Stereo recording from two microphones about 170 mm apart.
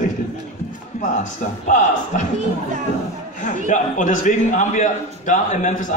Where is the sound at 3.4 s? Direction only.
45° left (ahead or behind).